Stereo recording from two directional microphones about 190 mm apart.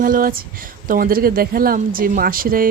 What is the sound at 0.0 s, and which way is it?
Speech, 50° right (ahead or behind).